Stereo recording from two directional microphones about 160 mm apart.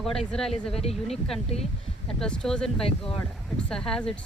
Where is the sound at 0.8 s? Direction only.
40° left (ahead or behind).